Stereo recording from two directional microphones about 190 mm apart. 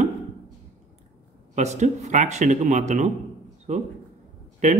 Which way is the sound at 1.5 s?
40° right (ahead or behind).